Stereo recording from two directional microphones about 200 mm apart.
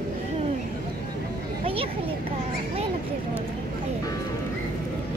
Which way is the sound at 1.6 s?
30° right (ahead or behind).